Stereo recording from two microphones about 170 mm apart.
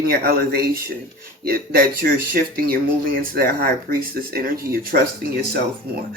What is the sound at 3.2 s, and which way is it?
Speech, 60° right (ahead or behind).